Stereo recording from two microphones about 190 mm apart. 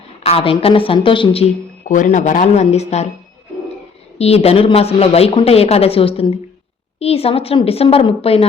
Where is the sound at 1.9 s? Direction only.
40° left (ahead or behind).